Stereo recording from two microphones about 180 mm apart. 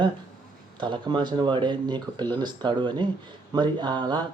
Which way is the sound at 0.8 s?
25° right (ahead or behind).